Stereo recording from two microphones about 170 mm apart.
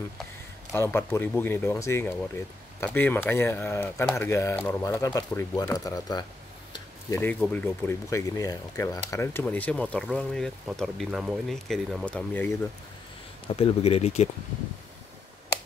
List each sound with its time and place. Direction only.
0.7 s speech: 15° left (ahead or behind)
4.8 s speech: 20° left (ahead or behind)
6.7 s a sound: 15° left (ahead or behind)
7.3 s speech: 5° left (ahead or behind)
13.6 s speech: 35° left (ahead or behind)